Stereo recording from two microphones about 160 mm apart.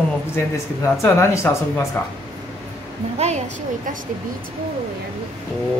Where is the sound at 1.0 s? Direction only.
15° left (ahead or behind).